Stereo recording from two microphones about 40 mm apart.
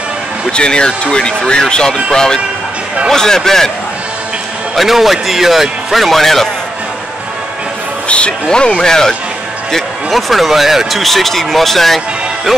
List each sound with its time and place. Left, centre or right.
0.5 s a man's voice: left
4.7 s speech: centre
8.1 s a man's voice: left; by 10.2 s centre
10.3 s speech: centre